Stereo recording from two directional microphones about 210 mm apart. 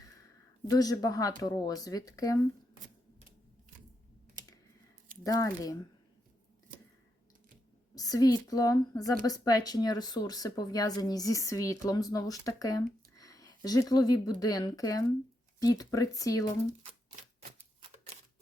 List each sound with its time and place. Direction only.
0.7 s a woman's voice: 15° left (ahead or behind)
5.2 s a woman's voice: 15° left (ahead or behind)
7.9 s a woman's voice: 15° left (ahead or behind)